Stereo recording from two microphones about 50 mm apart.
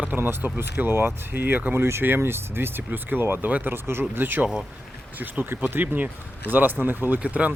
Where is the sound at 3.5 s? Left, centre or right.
Right.